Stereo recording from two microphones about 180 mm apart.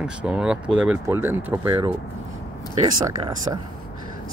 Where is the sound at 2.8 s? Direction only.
20° right (ahead or behind).